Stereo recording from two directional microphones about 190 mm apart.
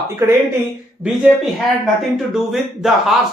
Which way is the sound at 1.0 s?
5° left (ahead or behind).